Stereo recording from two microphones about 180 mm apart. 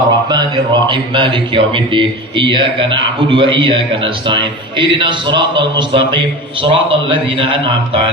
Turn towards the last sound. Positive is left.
turn(degrees=-30)  # may be behind; listen again after turning